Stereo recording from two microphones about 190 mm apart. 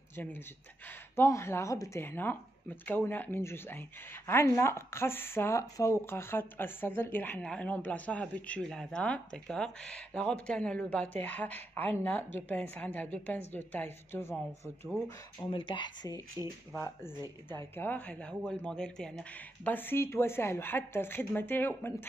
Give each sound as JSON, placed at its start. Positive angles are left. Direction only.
{"t": 0.1, "sound": "speech", "side_deg": 10}
{"t": 15.4, "sound": "speech", "side_deg": 25}